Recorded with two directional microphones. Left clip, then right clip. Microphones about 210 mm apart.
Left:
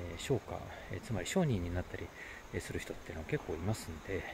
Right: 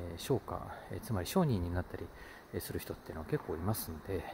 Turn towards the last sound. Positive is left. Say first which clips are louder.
# even
turn(degrees=-20)  # may be behind; listen again after turning